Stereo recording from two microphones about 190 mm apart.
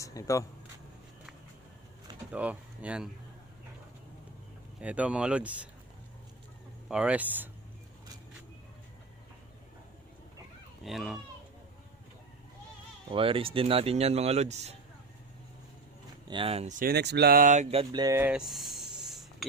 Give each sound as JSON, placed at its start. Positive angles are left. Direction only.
{"t": 0.0, "sound": "speech", "side_deg": 15}
{"t": 2.3, "sound": "speech", "side_deg": -10}
{"t": 4.8, "sound": "speech", "side_deg": -5}
{"t": 6.8, "sound": "speech", "side_deg": -5}
{"t": 10.8, "sound": "speech", "side_deg": 0}
{"t": 13.1, "sound": "speech", "side_deg": -30}
{"t": 16.3, "sound": "speech", "side_deg": -30}
{"t": 16.8, "sound": "speech", "side_deg": -60}
{"t": 18.0, "sound": "a sound", "side_deg": -15}